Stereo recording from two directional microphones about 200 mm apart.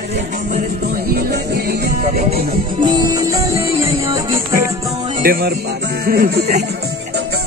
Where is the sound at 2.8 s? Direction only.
20° right (ahead or behind).